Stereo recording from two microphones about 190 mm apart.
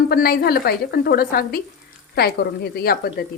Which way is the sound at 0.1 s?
55° left (ahead or behind).